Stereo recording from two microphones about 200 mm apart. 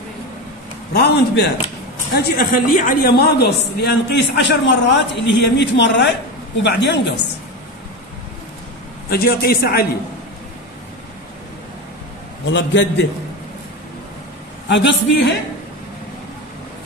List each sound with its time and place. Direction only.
0.9 s a man's voice: 55° left (ahead or behind)
9.1 s a man's voice: 50° left (ahead or behind)
12.4 s a man's voice: 65° left (ahead or behind)
14.7 s a man's voice: 60° left (ahead or behind)